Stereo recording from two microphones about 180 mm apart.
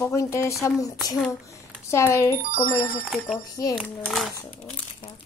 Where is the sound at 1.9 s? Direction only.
15° left (ahead or behind).